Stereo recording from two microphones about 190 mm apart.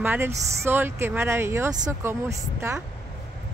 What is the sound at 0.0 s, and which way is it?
Speech, 10° right (ahead or behind).